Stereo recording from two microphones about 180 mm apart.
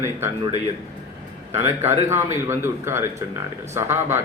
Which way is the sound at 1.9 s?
15° right (ahead or behind).